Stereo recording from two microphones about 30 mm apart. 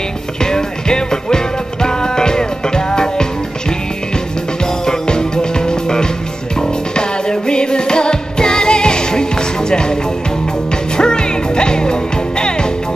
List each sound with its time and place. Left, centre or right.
0.4 s music: left
4.8 s music: left
11.0 s music: left